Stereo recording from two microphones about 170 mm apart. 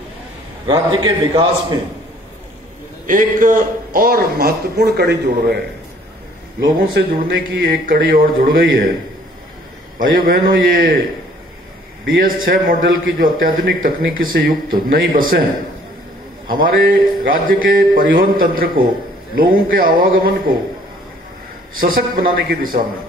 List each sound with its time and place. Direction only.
0.7 s a man's voice: 25° right (ahead or behind)
3.1 s speech: 50° right (ahead or behind); by 5.6 s 70° right (ahead or behind)
7.0 s speech: 65° right (ahead or behind)
9.9 s speech: 55° right (ahead or behind)
12.0 s speech: 60° right (ahead or behind)
16.4 s speech: 55° right (ahead or behind)
21.7 s speech: 60° right (ahead or behind)